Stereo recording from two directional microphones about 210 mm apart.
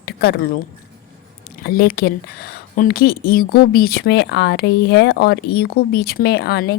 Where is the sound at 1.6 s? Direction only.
45° left (ahead or behind).